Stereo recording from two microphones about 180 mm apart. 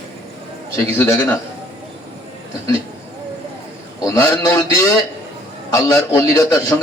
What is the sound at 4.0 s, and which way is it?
A man's voice, 15° left (ahead or behind).